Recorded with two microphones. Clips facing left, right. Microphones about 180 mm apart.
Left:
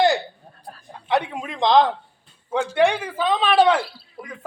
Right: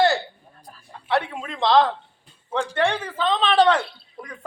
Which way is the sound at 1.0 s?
15° left (ahead or behind).